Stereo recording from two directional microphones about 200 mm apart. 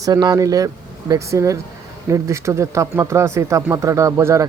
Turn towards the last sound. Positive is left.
turn(degrees=-15)  # may be behind; listen again after turning